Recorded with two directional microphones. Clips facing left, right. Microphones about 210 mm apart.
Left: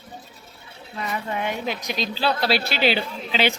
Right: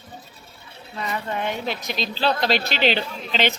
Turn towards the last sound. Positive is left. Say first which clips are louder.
# left 1 dB
turn(degrees=10)  # may be behind; listen again after turning